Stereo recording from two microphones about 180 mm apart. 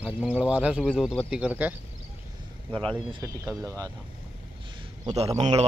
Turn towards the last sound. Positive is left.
turn(degrees=-35)  # may be behind; listen again after turning